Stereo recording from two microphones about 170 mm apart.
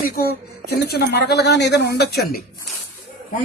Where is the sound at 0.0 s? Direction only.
65° left (ahead or behind).